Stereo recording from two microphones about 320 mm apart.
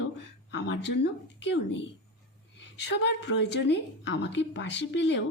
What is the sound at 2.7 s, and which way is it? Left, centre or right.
A woman's voice, left.